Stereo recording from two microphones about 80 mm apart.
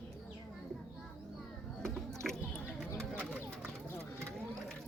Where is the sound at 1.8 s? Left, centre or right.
Centre.